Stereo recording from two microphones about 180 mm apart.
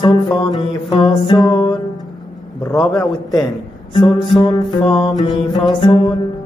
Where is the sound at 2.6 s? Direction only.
10° left (ahead or behind).